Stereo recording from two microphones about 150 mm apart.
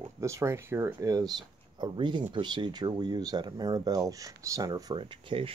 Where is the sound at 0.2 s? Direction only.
20° right (ahead or behind).